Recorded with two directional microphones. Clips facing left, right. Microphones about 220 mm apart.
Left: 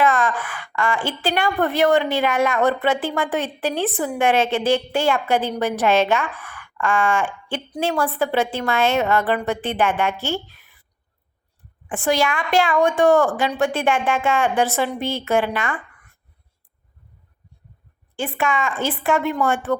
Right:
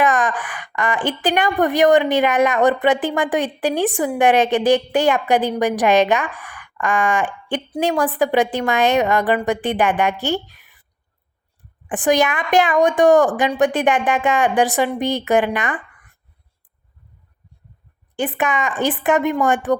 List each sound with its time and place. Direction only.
0.0 s a woman's voice: 15° right (ahead or behind)
11.9 s a woman's voice: 15° right (ahead or behind)
18.2 s a woman's voice: 20° right (ahead or behind)